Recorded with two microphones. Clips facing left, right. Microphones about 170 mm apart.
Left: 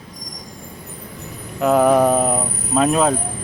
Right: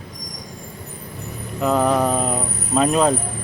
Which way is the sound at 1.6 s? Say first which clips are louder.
Left 4 dB; 10° left (ahead or behind).